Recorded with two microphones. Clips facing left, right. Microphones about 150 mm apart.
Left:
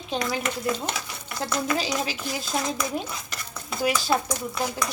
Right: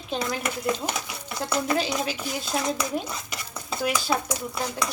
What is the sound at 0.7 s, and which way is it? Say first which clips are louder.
Speech: right 1 dB; 15° right (ahead or behind).